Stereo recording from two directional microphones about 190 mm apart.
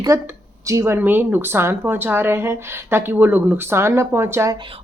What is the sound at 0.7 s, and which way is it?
A woman's voice, 15° right (ahead or behind).